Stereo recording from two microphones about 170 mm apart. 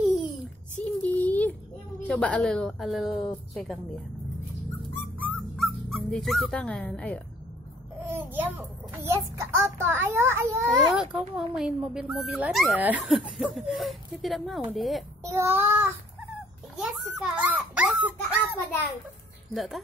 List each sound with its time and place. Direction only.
1.0 s a sound: 10° left (ahead or behind)
2.0 s speech: 5° left (ahead or behind)
4.9 s music: 10° left (ahead or behind)
5.6 s speech: 5° left (ahead or behind)
8.0 s a child's voice: 10° right (ahead or behind)
10.6 s speech: centre (ahead or behind)
15.2 s child singing: 15° right (ahead or behind)
16.7 s a child's voice: 5° right (ahead or behind)